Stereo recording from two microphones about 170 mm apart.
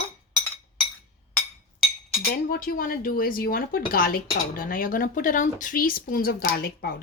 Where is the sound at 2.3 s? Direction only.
60° left (ahead or behind).